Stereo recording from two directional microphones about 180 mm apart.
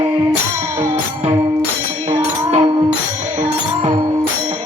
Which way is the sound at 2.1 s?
35° right (ahead or behind).